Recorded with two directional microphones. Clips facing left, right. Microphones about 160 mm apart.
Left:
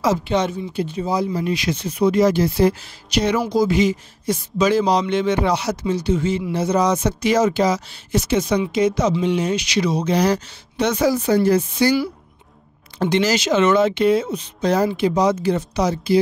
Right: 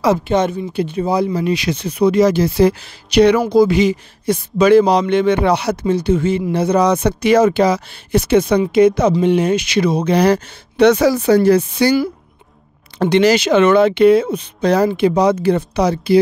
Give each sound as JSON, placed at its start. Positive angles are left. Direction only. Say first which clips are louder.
{"t": 0.0, "sound": "speech", "louder": "right 4 dB", "side_deg": -55}
{"t": 13.0, "sound": "speech", "louder": "right 6 dB", "side_deg": -65}